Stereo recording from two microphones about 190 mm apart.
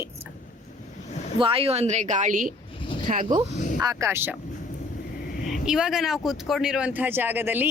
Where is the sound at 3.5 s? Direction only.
40° left (ahead or behind).